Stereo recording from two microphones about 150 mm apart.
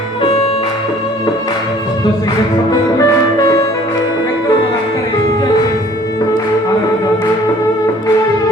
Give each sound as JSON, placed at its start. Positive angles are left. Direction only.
{"t": 3.0, "sound": "music", "side_deg": 25}